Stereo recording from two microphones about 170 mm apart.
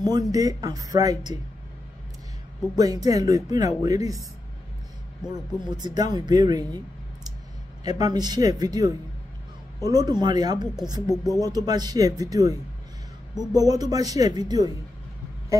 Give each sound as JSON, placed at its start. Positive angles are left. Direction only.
{"t": 0.3, "sound": "speech", "side_deg": -20}
{"t": 2.7, "sound": "speech", "side_deg": -20}
{"t": 5.3, "sound": "speech", "side_deg": -25}
{"t": 7.8, "sound": "speech", "side_deg": -25}